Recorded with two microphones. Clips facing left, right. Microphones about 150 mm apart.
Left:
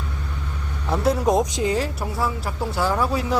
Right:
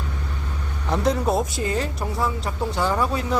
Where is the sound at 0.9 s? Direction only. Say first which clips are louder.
Left 2 dB; 5° left (ahead or behind).